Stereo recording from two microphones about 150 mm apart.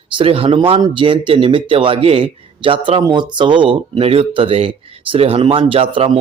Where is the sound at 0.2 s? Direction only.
35° right (ahead or behind).